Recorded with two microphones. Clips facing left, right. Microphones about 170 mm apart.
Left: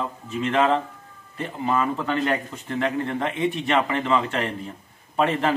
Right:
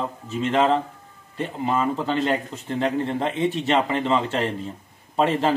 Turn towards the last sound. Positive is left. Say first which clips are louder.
# right 1 dB
turn(degrees=-30)  # may be behind; listen again after turning